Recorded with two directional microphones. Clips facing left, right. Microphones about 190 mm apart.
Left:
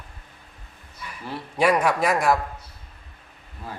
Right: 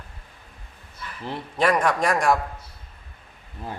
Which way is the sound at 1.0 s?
10° left (ahead or behind).